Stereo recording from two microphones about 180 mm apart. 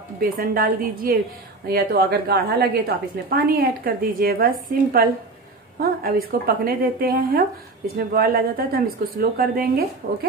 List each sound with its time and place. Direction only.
0.2 s a woman's voice: 55° right (ahead or behind)
5.8 s a woman's voice: 55° right (ahead or behind)